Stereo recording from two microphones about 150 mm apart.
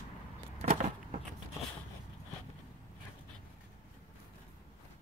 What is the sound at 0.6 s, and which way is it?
Vehicle, 55° right (ahead or behind).